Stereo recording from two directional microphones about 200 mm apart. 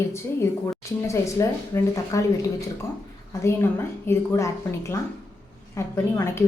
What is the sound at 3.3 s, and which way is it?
Speech, 15° left (ahead or behind).